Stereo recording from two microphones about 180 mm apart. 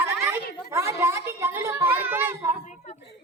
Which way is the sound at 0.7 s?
15° right (ahead or behind).